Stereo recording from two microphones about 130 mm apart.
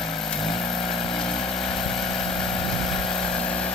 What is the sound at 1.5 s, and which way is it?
Vehicle, 5° left (ahead or behind).